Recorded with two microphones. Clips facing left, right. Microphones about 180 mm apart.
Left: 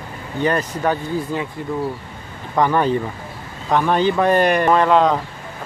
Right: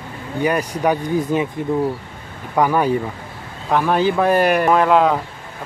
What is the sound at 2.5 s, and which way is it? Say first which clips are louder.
Speech: right 1 dB; 10° right (ahead or behind).